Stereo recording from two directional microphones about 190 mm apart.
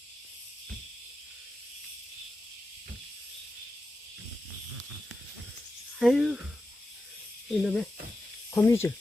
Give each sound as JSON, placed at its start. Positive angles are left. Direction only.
{"t": 6.0, "sound": "speech", "side_deg": 0}
{"t": 7.6, "sound": "speech", "side_deg": 0}
{"t": 8.5, "sound": "speech", "side_deg": 15}